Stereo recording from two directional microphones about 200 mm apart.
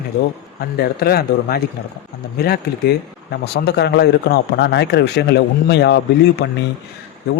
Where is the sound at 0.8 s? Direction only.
50° left (ahead or behind).